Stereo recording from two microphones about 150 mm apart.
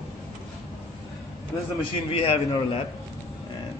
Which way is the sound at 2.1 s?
40° left (ahead or behind).